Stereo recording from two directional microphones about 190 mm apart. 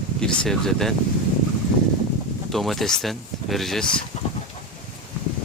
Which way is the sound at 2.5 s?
Centre (ahead or behind).